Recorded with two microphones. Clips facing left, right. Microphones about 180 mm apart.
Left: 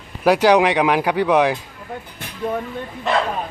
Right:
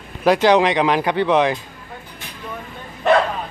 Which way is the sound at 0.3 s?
10° left (ahead or behind).